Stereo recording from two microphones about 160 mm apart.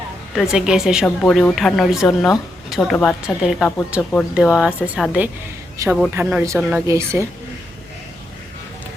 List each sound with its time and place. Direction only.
0.3 s speech: 5° right (ahead or behind)
5.7 s a man's voice: 20° right (ahead or behind)
6.6 s speech: 5° right (ahead or behind)
6.8 s speech: 15° right (ahead or behind)